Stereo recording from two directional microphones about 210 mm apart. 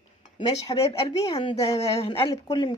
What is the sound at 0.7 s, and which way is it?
Speech, 25° left (ahead or behind).